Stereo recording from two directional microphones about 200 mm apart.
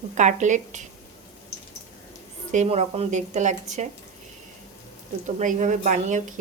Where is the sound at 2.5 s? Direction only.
35° right (ahead or behind).